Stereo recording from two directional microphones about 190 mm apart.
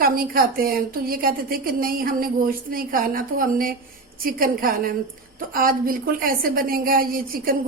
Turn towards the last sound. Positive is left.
turn(degrees=-50)  # may be behind; listen again after turning